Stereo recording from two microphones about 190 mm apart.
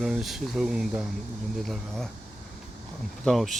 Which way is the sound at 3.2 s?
Centre (ahead or behind).